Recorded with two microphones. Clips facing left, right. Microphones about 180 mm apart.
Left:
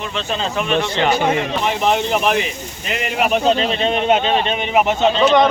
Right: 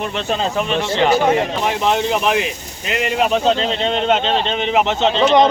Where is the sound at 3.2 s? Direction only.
15° left (ahead or behind).